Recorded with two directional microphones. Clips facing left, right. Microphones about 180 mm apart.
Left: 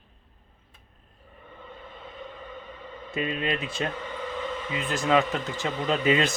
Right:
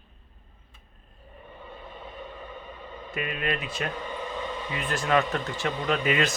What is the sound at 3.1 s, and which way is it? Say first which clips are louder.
Speech: left 2 dB; 25° left (ahead or behind).